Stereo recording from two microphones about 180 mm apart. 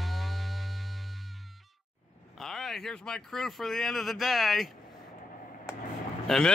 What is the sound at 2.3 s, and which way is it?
Speech, centre (ahead or behind).